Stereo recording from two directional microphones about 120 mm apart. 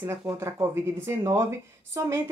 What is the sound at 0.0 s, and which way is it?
Speech, 20° right (ahead or behind).